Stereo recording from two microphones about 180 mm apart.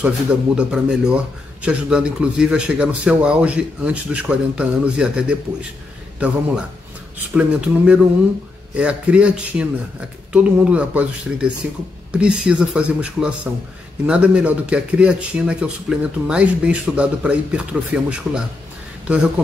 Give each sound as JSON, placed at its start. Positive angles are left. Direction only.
{"t": 0.6, "sound": "speech", "side_deg": -5}